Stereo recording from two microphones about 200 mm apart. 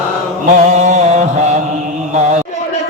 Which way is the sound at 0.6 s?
35° right (ahead or behind).